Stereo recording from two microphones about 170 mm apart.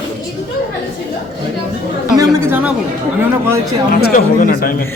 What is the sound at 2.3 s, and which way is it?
Speech, 15° right (ahead or behind).